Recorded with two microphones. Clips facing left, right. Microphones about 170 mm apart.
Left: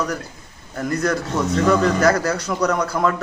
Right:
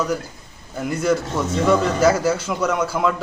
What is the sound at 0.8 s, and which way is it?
A man's voice, 5° right (ahead or behind).